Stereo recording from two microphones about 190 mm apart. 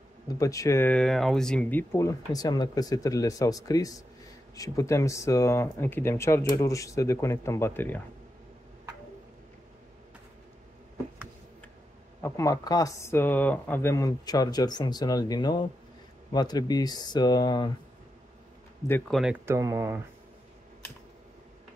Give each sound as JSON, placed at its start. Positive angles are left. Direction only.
{"t": 0.3, "sound": "speech", "side_deg": 15}
{"t": 12.2, "sound": "speech", "side_deg": 15}
{"t": 18.9, "sound": "speech", "side_deg": 10}
{"t": 19.1, "sound": "speech", "side_deg": -5}